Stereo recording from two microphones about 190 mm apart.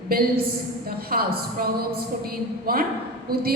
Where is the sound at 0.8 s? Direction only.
50° right (ahead or behind).